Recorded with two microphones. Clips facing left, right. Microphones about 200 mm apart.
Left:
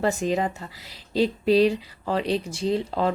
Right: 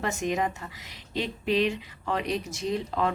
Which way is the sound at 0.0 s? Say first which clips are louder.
Left 4 dB; 35° left (ahead or behind).